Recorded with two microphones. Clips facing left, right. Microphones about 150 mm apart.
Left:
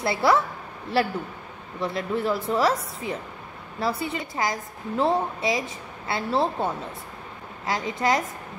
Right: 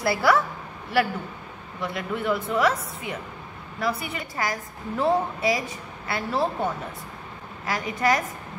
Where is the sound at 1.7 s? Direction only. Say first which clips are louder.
Left 3 dB; 30° left (ahead or behind).